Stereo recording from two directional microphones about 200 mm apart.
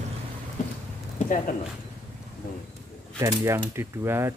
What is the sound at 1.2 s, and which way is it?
Speech, 40° left (ahead or behind).